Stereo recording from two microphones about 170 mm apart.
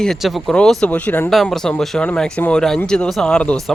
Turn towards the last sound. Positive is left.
turn(degrees=5)  # may be behind; listen again after turning